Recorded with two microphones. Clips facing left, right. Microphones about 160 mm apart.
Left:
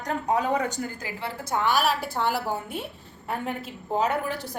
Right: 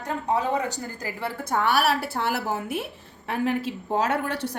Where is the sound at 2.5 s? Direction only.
80° right.